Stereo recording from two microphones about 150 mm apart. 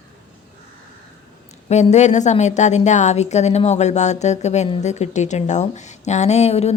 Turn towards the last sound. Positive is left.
turn(degrees=45)  # may be behind; listen again after turning